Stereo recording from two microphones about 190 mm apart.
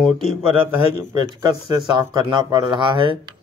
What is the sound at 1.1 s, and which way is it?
Speech, 20° right (ahead or behind).